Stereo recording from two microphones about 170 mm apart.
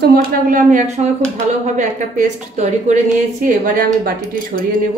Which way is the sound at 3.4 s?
55° right (ahead or behind).